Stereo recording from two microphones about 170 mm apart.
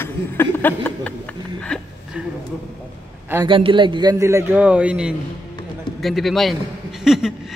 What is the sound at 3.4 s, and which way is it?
A man's voice, 30° right (ahead or behind).